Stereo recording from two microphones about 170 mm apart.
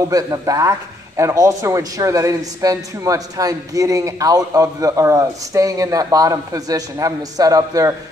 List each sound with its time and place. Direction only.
0.1 s a man's voice: 20° right (ahead or behind)